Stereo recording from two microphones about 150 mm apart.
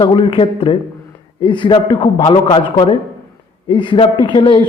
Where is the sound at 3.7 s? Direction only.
35° left (ahead or behind).